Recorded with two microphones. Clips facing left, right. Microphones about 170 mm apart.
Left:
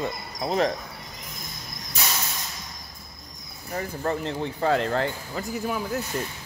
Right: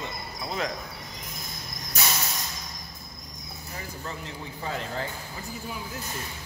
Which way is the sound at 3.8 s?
60° left (ahead or behind).